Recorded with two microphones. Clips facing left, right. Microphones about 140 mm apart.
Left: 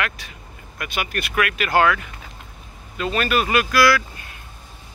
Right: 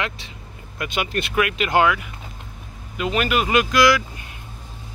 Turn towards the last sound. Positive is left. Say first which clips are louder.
# right 1 dB
turn(degrees=-20)  # may be behind; listen again after turning